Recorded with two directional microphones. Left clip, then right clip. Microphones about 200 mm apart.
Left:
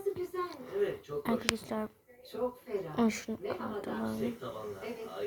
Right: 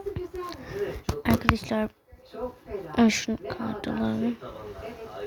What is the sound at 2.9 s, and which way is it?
Speech, 15° right (ahead or behind).